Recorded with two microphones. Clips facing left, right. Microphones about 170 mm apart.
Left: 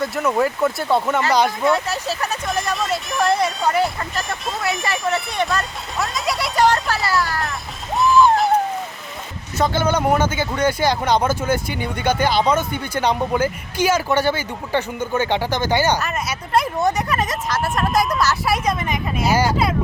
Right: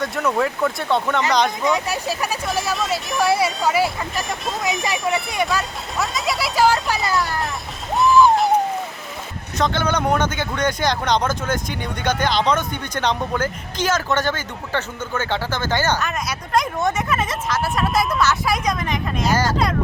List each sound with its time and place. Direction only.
0.0 s speech: centre (ahead or behind)
1.6 s speech: 15° right (ahead or behind)
5.5 s speech: centre (ahead or behind)
6.9 s a sound: 20° right (ahead or behind)
7.2 s speech: centre (ahead or behind)
7.9 s music: centre (ahead or behind)
9.6 s speech: 5° left (ahead or behind)
16.0 s speech: 5° left (ahead or behind)